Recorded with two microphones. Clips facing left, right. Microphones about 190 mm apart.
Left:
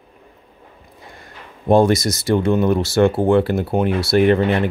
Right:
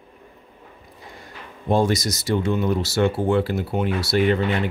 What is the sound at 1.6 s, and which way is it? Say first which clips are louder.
Speech: left 6 dB; 55° left (ahead or behind).